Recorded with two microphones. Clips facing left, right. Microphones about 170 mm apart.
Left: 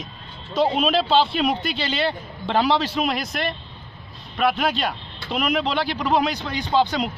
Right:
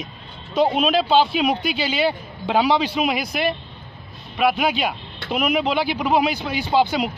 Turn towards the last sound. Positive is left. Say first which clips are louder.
# right 2 dB
turn(degrees=-5)  # may be behind; listen again after turning